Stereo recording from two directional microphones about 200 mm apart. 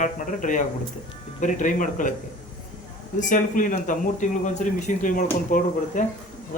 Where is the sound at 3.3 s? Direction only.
40° left (ahead or behind).